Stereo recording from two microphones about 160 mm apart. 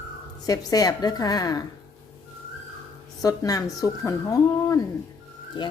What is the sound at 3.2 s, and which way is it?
A woman's voice, 20° left (ahead or behind).